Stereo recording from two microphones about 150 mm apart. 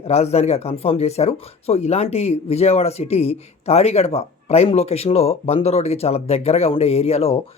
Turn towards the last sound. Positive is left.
turn(degrees=45)  # may be behind; listen again after turning